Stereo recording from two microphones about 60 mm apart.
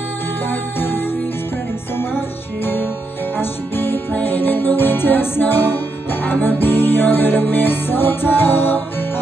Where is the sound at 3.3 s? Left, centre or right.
Left.